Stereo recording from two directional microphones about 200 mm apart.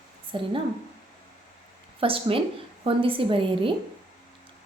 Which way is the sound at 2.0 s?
25° right (ahead or behind).